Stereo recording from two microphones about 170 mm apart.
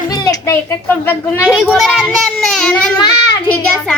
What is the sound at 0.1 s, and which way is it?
Speech, 20° left (ahead or behind).